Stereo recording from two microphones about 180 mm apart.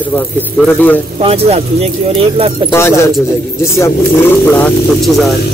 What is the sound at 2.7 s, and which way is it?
Speech, 15° left (ahead or behind).